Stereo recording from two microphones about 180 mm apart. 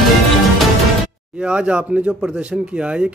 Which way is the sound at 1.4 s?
5° right (ahead or behind).